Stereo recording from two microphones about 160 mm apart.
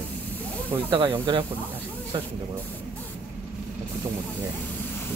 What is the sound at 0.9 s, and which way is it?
Speech, 30° right (ahead or behind).